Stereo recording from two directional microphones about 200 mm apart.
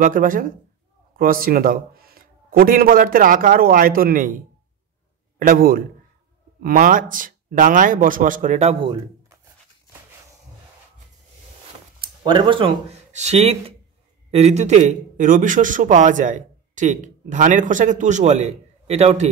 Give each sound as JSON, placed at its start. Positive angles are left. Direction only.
{"t": 0.0, "sound": "speech", "side_deg": -40}
{"t": 5.4, "sound": "a man's voice", "side_deg": -45}
{"t": 12.0, "sound": "a man's voice", "side_deg": -25}